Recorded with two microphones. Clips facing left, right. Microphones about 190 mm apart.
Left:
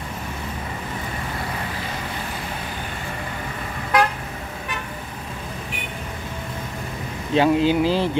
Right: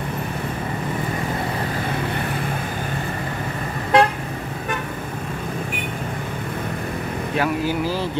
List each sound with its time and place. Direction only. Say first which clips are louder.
3.9 s vehicle: right 4 dB; 25° right (ahead or behind)
7.3 s speech: left 6 dB; 25° left (ahead or behind)